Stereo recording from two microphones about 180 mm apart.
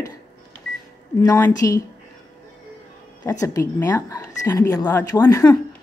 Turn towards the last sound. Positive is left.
turn(degrees=15)  # may be behind; listen again after turning